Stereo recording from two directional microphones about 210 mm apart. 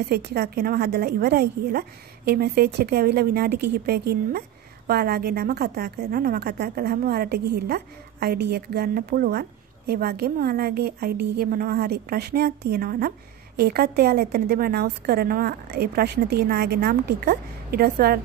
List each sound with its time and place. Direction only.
0.0 s a woman's voice: 50° right (ahead or behind)